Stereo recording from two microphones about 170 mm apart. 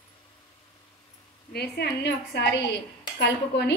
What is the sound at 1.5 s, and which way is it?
A woman's voice, 70° left (ahead or behind).